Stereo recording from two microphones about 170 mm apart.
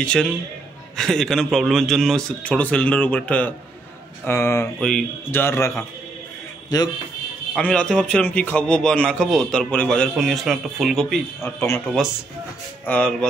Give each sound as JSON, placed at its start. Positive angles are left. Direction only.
{"t": 0.0, "sound": "a man's voice", "side_deg": 5}
{"t": 4.7, "sound": "a man's voice", "side_deg": 5}
{"t": 7.5, "sound": "a man's voice", "side_deg": 5}
{"t": 11.4, "sound": "a man's voice", "side_deg": 15}
{"t": 12.8, "sound": "a man's voice", "side_deg": 5}